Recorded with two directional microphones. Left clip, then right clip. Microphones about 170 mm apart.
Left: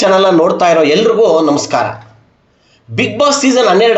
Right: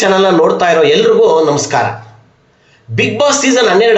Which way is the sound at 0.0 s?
40° left (ahead or behind).